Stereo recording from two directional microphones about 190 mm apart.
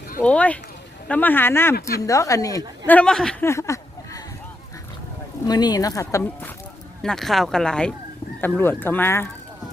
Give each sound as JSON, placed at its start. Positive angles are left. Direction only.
{"t": 0.2, "sound": "a woman's voice", "side_deg": 5}
{"t": 3.5, "sound": "a sound", "side_deg": 15}
{"t": 5.5, "sound": "a woman's voice", "side_deg": 20}
{"t": 7.0, "sound": "a woman's voice", "side_deg": 0}